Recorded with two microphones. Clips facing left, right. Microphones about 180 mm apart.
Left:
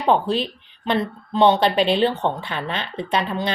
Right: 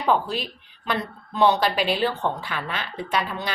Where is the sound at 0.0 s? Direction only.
25° left (ahead or behind).